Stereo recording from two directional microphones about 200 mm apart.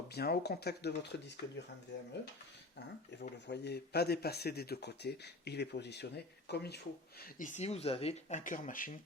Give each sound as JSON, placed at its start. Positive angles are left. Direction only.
{"t": 0.1, "sound": "speech", "side_deg": 55}
{"t": 3.2, "sound": "speech", "side_deg": 55}